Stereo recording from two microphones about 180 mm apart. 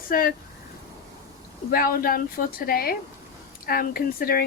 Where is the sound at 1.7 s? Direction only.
55° left (ahead or behind).